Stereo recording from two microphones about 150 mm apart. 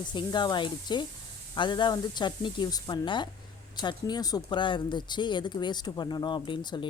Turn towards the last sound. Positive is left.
turn(degrees=30)  # may be behind; listen again after turning